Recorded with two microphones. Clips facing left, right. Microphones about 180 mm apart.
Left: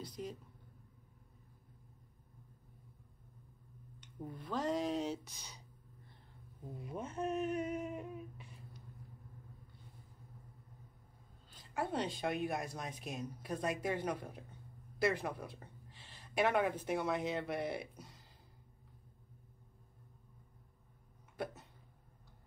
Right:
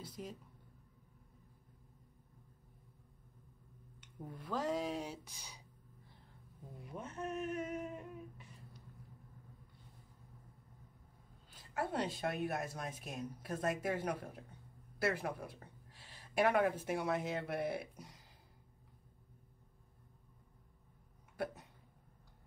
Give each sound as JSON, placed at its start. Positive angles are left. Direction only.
{"t": 0.0, "sound": "a woman's voice", "side_deg": -5}
{"t": 4.0, "sound": "speech", "side_deg": -5}
{"t": 7.0, "sound": "speech", "side_deg": 25}
{"t": 11.5, "sound": "speech", "side_deg": -5}
{"t": 15.0, "sound": "a sound", "side_deg": -5}
{"t": 16.8, "sound": "speech", "side_deg": -5}